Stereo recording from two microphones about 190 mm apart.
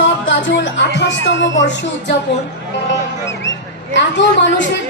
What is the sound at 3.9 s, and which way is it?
Speech, 70° left (ahead or behind).